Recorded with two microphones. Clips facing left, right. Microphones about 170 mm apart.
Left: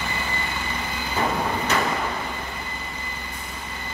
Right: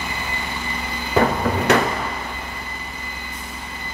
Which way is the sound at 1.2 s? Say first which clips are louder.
Right 8 dB; 65° right (ahead or behind).